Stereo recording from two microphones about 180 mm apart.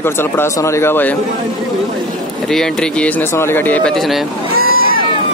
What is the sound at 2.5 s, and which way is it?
Speech, 5° left (ahead or behind).